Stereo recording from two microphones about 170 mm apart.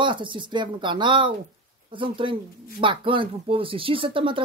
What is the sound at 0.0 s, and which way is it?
A woman's voice, 30° right (ahead or behind).